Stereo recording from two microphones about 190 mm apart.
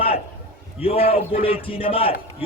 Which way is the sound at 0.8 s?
30° left (ahead or behind).